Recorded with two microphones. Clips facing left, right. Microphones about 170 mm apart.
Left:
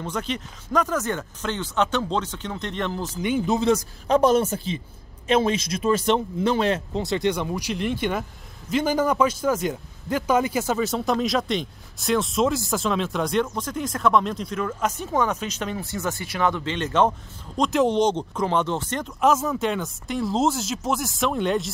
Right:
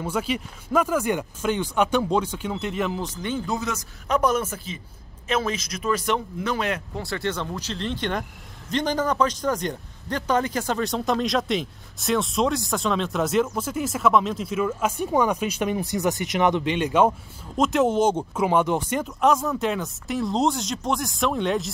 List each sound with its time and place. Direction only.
0.0 s speech: 10° right (ahead or behind)
3.1 s speech: 10° left (ahead or behind)
3.5 s speech: 30° left (ahead or behind); by 21.6 s centre (ahead or behind)